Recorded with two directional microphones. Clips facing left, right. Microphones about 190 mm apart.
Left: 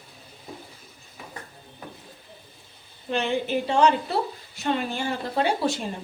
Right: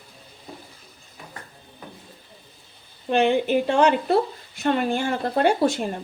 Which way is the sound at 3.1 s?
55° right (ahead or behind).